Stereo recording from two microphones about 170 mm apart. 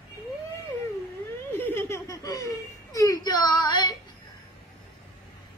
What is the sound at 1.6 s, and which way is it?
Giggle, 15° left (ahead or behind).